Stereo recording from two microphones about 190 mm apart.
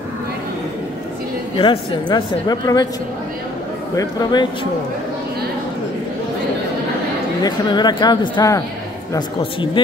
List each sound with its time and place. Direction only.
1.6 s speech: 25° left (ahead or behind)
3.9 s speech: 20° left (ahead or behind)
7.4 s speech: 20° left (ahead or behind)